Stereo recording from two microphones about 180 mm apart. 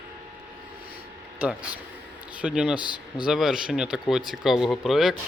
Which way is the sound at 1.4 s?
10° right (ahead or behind).